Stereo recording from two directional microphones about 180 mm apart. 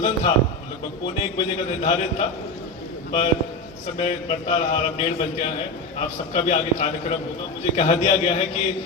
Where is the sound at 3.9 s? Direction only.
30° left (ahead or behind).